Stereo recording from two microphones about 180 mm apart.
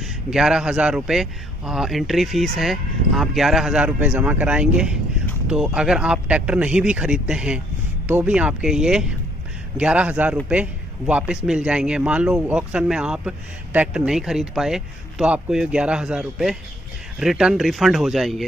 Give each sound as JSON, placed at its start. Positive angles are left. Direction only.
{"t": 0.0, "sound": "a man's voice", "side_deg": 0}